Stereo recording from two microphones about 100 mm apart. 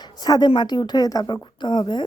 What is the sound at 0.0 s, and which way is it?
A woman's voice, 45° left (ahead or behind).